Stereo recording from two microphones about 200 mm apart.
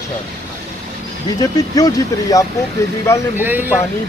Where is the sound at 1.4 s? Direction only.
20° left (ahead or behind).